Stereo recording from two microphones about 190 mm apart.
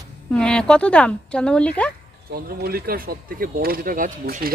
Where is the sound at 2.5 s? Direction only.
50° right (ahead or behind).